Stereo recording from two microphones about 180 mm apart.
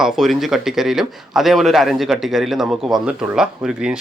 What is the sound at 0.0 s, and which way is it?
Speech, centre (ahead or behind).